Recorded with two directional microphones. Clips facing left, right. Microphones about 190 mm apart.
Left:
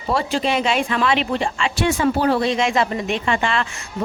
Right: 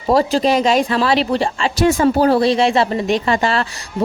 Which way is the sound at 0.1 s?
35° right (ahead or behind).